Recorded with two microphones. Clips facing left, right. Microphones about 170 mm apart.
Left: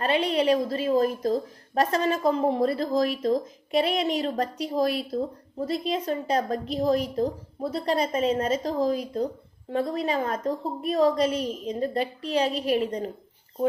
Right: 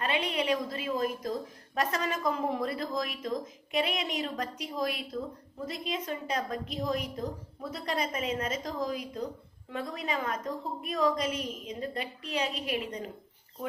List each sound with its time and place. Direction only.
0.0 s a woman's voice: 35° left (ahead or behind)